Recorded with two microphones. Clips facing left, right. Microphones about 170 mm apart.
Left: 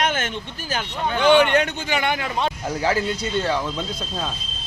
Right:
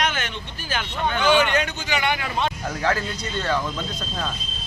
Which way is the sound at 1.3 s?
60° left (ahead or behind).